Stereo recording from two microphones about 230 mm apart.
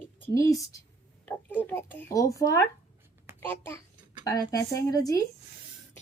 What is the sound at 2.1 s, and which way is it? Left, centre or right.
Speech, centre.